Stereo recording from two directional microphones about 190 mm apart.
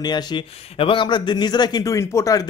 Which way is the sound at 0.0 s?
25° left (ahead or behind).